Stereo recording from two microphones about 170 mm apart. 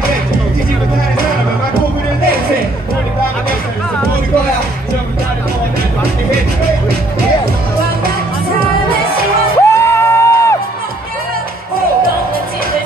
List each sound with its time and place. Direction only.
9.6 s music: 15° left (ahead or behind)